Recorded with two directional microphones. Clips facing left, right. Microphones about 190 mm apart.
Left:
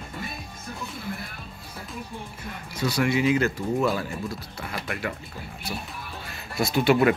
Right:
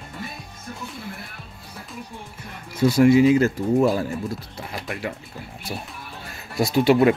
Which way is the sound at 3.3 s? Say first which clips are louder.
Right 5 dB; 35° right (ahead or behind).